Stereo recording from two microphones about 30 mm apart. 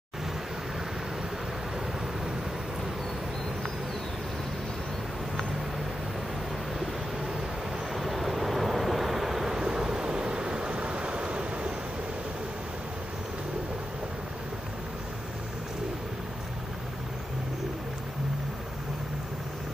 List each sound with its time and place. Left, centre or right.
7.9 s vehicle: centre
9.6 s vehicle: right